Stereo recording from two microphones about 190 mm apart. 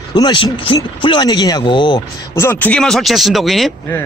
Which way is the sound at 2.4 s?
10° left (ahead or behind).